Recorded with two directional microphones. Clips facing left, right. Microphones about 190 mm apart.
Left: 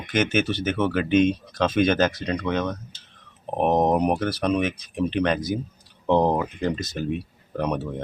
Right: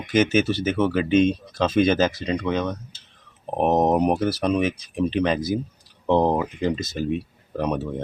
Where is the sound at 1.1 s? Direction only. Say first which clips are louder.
Even; 30° right (ahead or behind).